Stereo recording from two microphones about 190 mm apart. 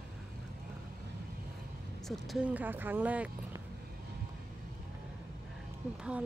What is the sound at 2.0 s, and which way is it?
Speech, 5° right (ahead or behind).